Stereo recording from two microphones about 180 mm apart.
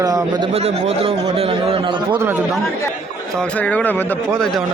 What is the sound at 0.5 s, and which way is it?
A man's voice, 35° right (ahead or behind).